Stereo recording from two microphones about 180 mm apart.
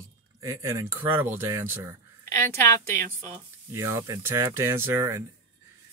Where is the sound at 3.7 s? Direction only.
15° right (ahead or behind).